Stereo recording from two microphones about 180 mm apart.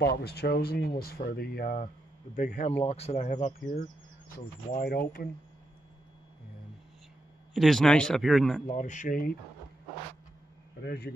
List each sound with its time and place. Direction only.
0.0 s speech: 65° left (ahead or behind)
2.3 s speech: 45° left (ahead or behind)
4.8 s speech: 55° left (ahead or behind)
7.5 s speech: centre (ahead or behind)
8.6 s speech: 40° left (ahead or behind)
10.8 s speech: 65° left (ahead or behind)